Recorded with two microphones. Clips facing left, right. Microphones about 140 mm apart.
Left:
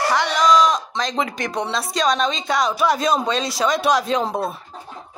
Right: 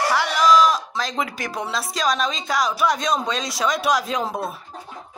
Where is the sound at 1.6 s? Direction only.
Centre (ahead or behind).